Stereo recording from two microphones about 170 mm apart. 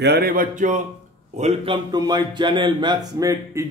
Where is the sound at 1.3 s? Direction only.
40° right (ahead or behind).